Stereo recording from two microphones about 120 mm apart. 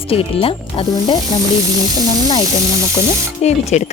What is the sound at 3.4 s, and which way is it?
Speech, 70° left (ahead or behind).